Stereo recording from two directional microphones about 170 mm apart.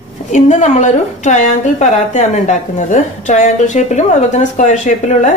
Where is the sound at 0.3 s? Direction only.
45° left (ahead or behind).